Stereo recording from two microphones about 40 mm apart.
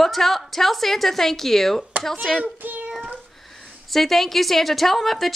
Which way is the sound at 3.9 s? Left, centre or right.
Centre.